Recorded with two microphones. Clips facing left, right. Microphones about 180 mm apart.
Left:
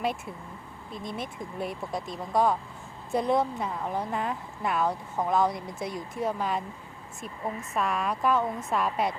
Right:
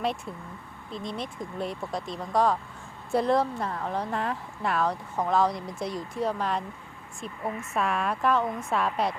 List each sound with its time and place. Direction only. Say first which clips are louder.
1.1 s speech: left 1 dB; centre (ahead or behind)
7.4 s speech: right 1 dB; 20° left (ahead or behind)
7.7 s speech: right 1 dB; centre (ahead or behind)